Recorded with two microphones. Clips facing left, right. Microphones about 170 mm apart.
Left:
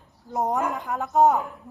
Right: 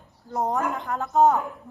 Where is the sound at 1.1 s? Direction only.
20° left (ahead or behind).